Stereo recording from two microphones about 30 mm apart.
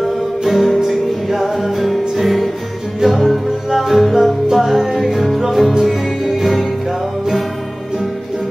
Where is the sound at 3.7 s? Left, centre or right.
Centre.